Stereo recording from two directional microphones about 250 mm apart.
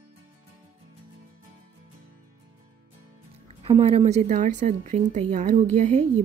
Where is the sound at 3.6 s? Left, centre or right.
Right.